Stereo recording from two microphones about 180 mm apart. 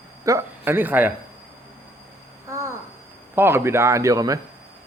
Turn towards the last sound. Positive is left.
turn(degrees=-20)  # may be behind; listen again after turning